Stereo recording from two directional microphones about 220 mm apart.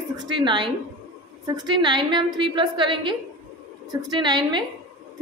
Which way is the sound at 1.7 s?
20° right (ahead or behind).